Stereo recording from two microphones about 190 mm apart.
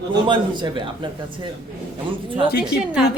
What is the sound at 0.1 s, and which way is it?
A man's voice, 25° right (ahead or behind).